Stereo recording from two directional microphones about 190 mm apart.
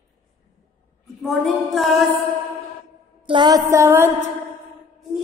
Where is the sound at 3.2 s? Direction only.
25° right (ahead or behind).